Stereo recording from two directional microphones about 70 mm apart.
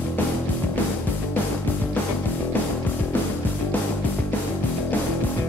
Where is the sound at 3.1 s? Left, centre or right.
Left.